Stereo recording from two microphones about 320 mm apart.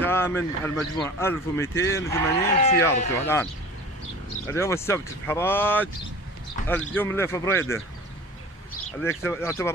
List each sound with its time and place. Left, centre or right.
0.0 s a man's voice: centre
2.5 s speech: left
4.5 s a man's voice: centre
9.0 s a man's voice: centre